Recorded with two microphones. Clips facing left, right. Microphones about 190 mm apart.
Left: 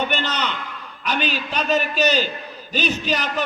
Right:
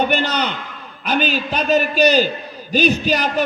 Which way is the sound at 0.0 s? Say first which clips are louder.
Right 5 dB; 40° right (ahead or behind).